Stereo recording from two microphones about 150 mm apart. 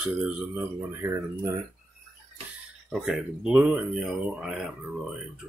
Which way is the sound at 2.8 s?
5° right (ahead or behind).